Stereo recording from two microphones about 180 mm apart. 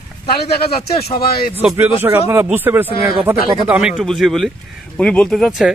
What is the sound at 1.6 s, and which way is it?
Speech, 10° right (ahead or behind).